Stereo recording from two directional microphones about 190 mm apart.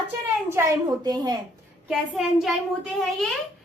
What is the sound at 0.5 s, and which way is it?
Speech, 15° right (ahead or behind).